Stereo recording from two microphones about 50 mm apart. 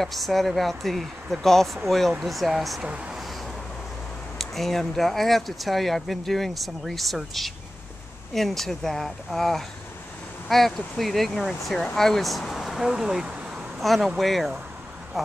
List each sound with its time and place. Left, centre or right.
0.0 s speech: centre
2.8 s speech: centre
4.4 s speech: centre
13.7 s speech: centre